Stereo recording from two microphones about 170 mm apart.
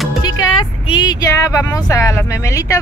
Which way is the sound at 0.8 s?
25° left (ahead or behind).